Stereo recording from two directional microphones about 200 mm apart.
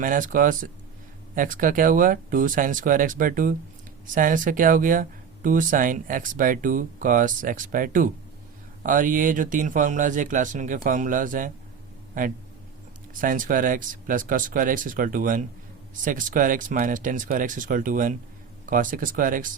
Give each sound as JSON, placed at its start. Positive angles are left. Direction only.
{"t": 0.0, "sound": "speech", "side_deg": -40}